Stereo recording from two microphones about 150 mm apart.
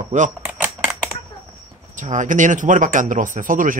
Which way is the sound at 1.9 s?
55° right (ahead or behind).